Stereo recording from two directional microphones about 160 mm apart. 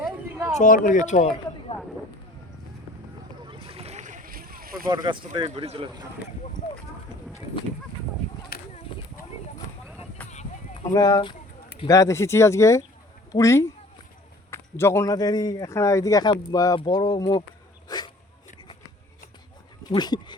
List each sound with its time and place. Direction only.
0.0 s a sound: 15° right (ahead or behind)
0.6 s a man's voice: 55° left (ahead or behind)
3.4 s boat: 35° right (ahead or behind); by 4.9 s 65° right (ahead or behind)
4.9 s speech: 25° right (ahead or behind)
10.2 s a sound: 10° left (ahead or behind)
10.9 s speech: 25° left (ahead or behind)
17.8 s dog: 25° left (ahead or behind)
19.9 s speech: 25° left (ahead or behind)